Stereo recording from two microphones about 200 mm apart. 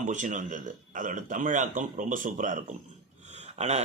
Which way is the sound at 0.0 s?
40° right (ahead or behind).